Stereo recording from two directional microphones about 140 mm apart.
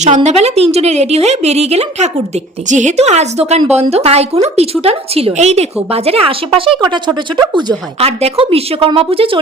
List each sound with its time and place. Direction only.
0.0 s a woman's voice: 55° right (ahead or behind)
6.9 s speech: 30° right (ahead or behind)
7.9 s a woman's voice: 45° right (ahead or behind)